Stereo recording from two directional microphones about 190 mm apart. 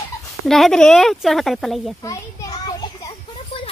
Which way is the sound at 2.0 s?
20° left (ahead or behind).